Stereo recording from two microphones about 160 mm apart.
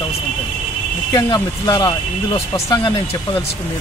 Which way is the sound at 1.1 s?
25° left (ahead or behind).